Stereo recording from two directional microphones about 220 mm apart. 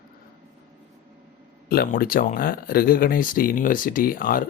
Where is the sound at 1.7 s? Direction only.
45° left (ahead or behind).